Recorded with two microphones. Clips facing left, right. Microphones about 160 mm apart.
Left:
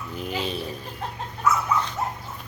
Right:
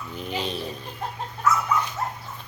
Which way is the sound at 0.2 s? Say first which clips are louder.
Left 1 dB; 5° left (ahead or behind).